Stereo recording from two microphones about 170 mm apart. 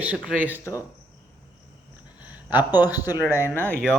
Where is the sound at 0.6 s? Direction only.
15° left (ahead or behind).